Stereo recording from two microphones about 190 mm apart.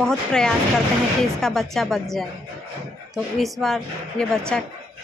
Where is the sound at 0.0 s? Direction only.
5° left (ahead or behind).